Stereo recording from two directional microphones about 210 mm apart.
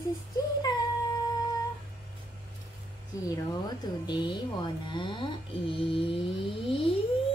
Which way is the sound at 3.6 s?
20° left (ahead or behind).